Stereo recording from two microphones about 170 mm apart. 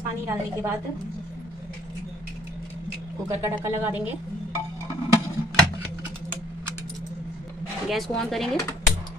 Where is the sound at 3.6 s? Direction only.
10° right (ahead or behind).